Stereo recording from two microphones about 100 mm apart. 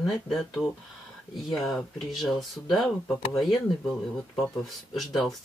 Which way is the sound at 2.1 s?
Centre (ahead or behind).